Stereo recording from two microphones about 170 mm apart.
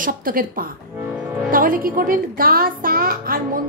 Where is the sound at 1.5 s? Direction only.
55° right (ahead or behind).